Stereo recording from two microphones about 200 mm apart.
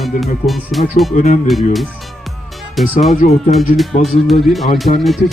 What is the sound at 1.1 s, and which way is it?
Speech, 35° left (ahead or behind).